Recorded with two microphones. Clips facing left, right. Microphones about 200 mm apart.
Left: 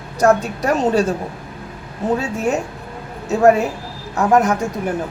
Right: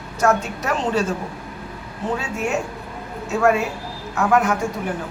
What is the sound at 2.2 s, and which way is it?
A woman's voice, 35° left (ahead or behind).